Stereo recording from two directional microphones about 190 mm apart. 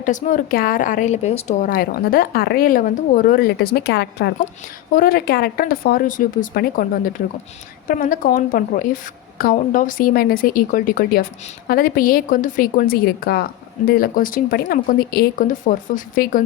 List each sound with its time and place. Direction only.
0.0 s a woman's voice: 40° left (ahead or behind)
1.6 s a woman's voice: 50° left (ahead or behind)